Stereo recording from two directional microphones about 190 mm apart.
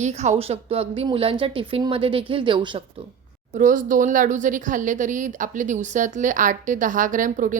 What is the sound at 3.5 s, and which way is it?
A woman's voice, 45° right (ahead or behind).